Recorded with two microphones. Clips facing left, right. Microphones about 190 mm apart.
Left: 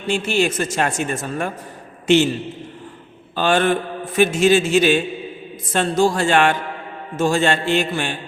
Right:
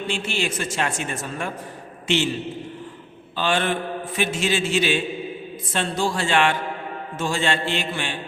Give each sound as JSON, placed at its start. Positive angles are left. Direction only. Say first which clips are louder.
{"t": 0.1, "sound": "a man's voice", "louder": "left 10 dB", "side_deg": 45}
{"t": 3.3, "sound": "a man's voice", "louder": "left 6 dB", "side_deg": 45}